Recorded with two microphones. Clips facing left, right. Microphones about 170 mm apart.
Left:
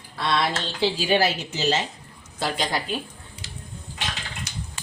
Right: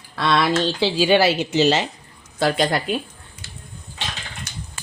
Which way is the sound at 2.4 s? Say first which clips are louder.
Right 7 dB; 60° right (ahead or behind).